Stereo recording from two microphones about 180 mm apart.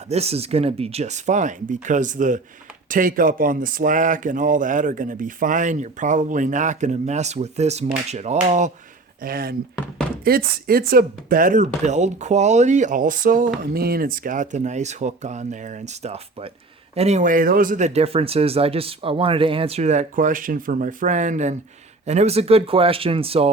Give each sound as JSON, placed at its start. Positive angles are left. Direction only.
{"t": 0.1, "sound": "speech", "side_deg": -35}
{"t": 9.2, "sound": "speech", "side_deg": -55}